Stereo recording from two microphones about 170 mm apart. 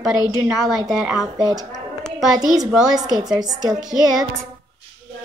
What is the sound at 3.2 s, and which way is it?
Speech, 20° right (ahead or behind).